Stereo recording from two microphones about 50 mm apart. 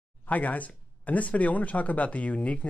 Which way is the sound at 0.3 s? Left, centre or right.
Left.